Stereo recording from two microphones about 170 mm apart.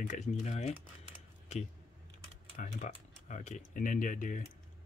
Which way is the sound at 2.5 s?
50° left (ahead or behind).